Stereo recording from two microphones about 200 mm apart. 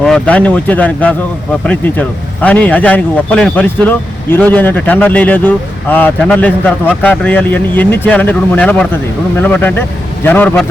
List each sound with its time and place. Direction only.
0.0 s speech: 5° left (ahead or behind)